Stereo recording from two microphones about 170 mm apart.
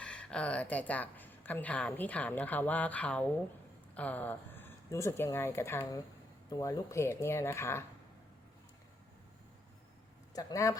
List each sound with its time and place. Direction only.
0.0 s a woman's voice: 5° left (ahead or behind)
10.3 s a woman's voice: 20° left (ahead or behind)